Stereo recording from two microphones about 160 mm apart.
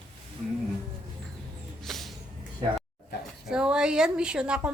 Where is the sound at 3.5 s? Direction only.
5° right (ahead or behind).